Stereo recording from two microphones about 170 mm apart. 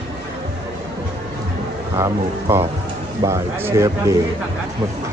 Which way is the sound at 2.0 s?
15° right (ahead or behind).